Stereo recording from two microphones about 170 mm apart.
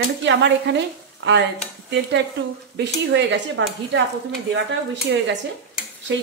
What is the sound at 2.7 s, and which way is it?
Speech, 90° right.